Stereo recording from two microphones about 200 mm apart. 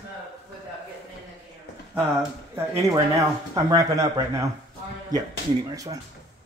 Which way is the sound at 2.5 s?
15° right (ahead or behind).